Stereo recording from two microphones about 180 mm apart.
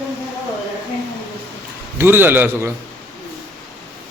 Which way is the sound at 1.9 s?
10° right (ahead or behind).